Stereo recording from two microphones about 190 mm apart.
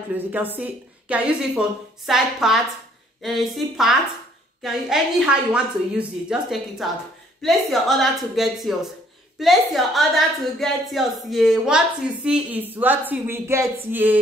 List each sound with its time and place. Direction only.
0.1 s a woman's voice: 10° right (ahead or behind)